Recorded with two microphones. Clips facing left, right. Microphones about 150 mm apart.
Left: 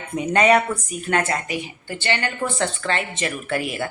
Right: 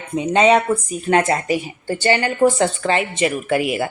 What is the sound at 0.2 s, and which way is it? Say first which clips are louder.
Speech: right 3 dB; 20° right (ahead or behind).